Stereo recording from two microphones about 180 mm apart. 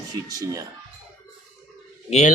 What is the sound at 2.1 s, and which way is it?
Speech, 40° left (ahead or behind).